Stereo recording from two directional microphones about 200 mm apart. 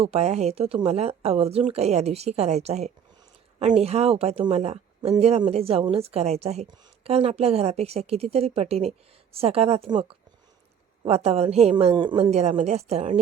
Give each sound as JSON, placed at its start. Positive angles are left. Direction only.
{"t": 0.0, "sound": "a woman's voice", "side_deg": -30}